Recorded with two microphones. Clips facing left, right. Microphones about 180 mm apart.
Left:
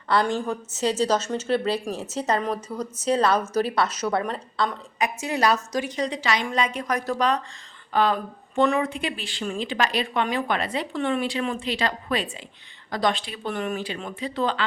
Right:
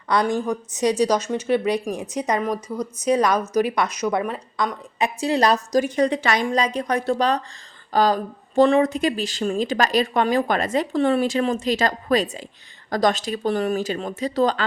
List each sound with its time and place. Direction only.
0.1 s a woman's voice: 15° right (ahead or behind)
4.9 s speech: 30° right (ahead or behind)
6.0 s a woman's voice: 55° right (ahead or behind)
6.4 s speech: 35° right (ahead or behind)